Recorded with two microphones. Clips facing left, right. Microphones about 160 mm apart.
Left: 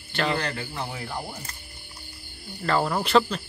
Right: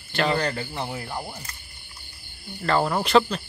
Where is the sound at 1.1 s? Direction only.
5° right (ahead or behind).